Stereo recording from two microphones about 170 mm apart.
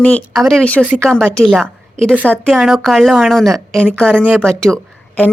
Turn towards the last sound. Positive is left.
turn(degrees=5)  # may be behind; listen again after turning